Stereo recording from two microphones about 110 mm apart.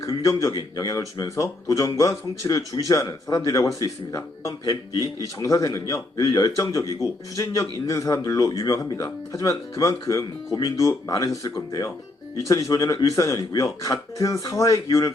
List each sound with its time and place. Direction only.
0.0 s speech: 30° left (ahead or behind)
12.4 s speech: 30° left (ahead or behind)